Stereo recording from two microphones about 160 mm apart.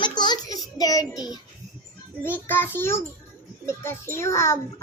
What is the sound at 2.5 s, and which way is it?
A child's voice, 15° left (ahead or behind).